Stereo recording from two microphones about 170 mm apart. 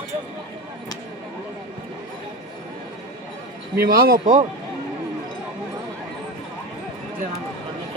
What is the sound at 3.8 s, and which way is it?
Speech, 60° right (ahead or behind).